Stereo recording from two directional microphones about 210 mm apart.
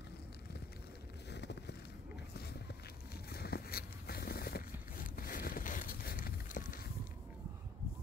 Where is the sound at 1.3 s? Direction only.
55° left (ahead or behind).